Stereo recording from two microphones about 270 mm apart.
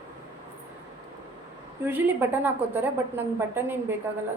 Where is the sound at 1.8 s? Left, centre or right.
Centre.